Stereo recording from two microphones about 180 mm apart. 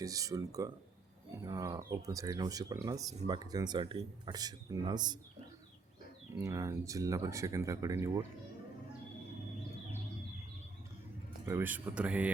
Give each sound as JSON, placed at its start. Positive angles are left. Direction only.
{"t": 0.0, "sound": "speech", "side_deg": -20}
{"t": 6.4, "sound": "speech", "side_deg": -15}
{"t": 11.4, "sound": "speech", "side_deg": -15}